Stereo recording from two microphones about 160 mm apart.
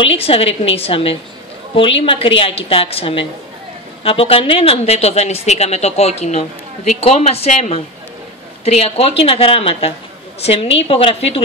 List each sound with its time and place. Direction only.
0.0 s speech: 35° left (ahead or behind)